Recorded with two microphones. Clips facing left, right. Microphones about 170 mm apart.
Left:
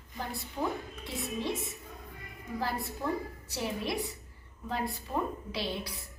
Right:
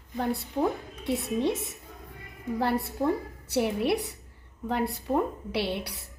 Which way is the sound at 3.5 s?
65° right (ahead or behind).